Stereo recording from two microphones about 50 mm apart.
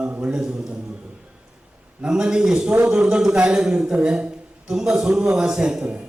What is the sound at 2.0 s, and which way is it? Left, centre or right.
Speech, centre.